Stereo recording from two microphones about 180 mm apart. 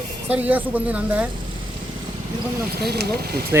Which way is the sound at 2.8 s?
60° right (ahead or behind).